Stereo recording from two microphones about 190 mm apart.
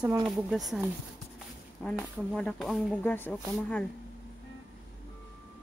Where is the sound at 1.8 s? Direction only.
5° left (ahead or behind).